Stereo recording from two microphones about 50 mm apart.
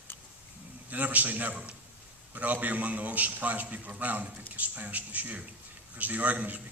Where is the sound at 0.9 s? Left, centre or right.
Right.